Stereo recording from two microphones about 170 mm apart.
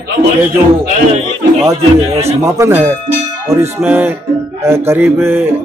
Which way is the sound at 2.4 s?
15° right (ahead or behind).